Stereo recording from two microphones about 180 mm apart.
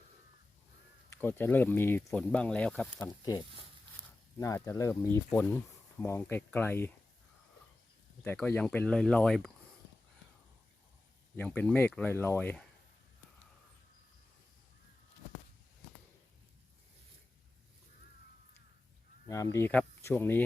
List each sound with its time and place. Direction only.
1.1 s speech: 10° left (ahead or behind)
3.0 s speech: 20° left (ahead or behind)
8.2 s speech: 10° left (ahead or behind)
11.3 s speech: 10° left (ahead or behind)
19.3 s speech: 15° left (ahead or behind)